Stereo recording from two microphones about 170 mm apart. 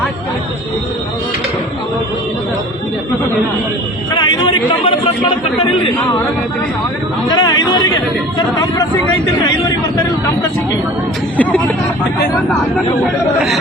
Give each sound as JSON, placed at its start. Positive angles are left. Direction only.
{"t": 4.1, "sound": "a sound", "side_deg": 25}
{"t": 7.3, "sound": "speech", "side_deg": 25}
{"t": 11.3, "sound": "speech", "side_deg": 10}